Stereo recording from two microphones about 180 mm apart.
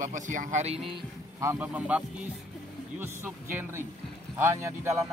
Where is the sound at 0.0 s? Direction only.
45° right (ahead or behind).